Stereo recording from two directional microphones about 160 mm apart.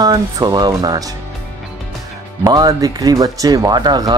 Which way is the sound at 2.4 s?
25° right (ahead or behind).